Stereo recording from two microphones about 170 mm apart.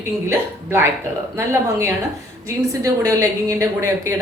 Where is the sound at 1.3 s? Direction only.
15° right (ahead or behind).